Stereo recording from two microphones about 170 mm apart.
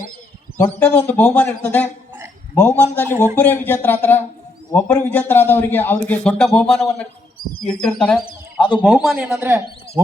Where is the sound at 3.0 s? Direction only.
15° right (ahead or behind).